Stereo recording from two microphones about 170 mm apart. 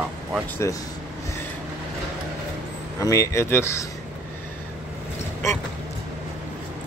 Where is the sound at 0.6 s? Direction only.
15° left (ahead or behind).